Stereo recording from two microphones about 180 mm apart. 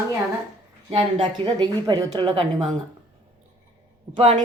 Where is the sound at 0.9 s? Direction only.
25° right (ahead or behind).